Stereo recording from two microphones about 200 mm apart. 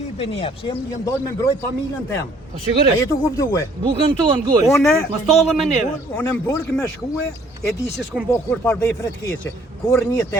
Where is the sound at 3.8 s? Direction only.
25° right (ahead or behind).